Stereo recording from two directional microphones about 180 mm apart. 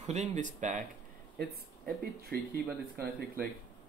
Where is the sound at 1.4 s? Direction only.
55° right (ahead or behind).